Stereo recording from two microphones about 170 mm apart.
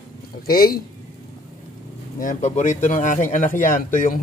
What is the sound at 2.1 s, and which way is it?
Speech, 50° left (ahead or behind).